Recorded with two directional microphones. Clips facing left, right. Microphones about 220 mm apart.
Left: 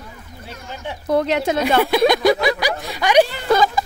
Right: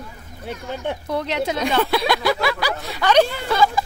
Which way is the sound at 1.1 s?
45° left (ahead or behind).